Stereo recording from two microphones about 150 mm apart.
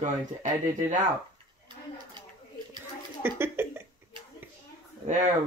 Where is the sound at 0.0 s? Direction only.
55° right (ahead or behind).